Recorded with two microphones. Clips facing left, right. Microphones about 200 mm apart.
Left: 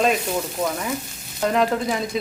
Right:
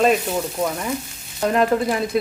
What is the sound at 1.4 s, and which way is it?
Speech, centre (ahead or behind).